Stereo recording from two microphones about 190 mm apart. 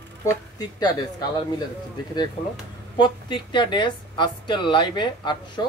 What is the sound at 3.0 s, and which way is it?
A woman's voice, 25° left (ahead or behind).